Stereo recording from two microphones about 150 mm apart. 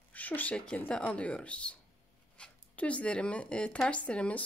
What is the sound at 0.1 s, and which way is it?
Speech, 10° left (ahead or behind).